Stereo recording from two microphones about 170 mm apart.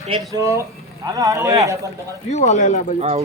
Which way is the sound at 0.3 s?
15° right (ahead or behind).